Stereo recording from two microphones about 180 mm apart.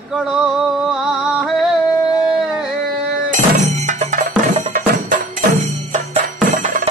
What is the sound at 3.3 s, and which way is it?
Music, 40° right (ahead or behind).